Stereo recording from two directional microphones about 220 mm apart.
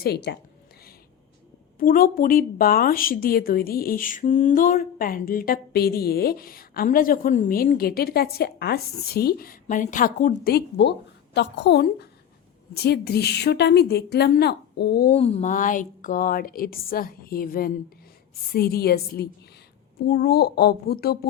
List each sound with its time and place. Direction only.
0.0 s a woman's voice: 45° left (ahead or behind)
1.8 s a woman's voice: 40° left (ahead or behind)
15.1 s a woman's voice: 30° left (ahead or behind); by 21.2 s 45° left (ahead or behind)